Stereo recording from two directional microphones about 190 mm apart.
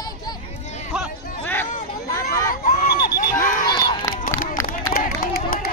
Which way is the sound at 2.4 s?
50° left (ahead or behind).